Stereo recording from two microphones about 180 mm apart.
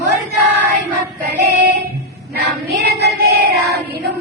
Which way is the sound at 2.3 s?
60° right (ahead or behind).